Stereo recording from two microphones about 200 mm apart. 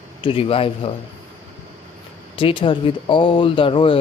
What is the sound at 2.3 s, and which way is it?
Speech, 25° left (ahead or behind).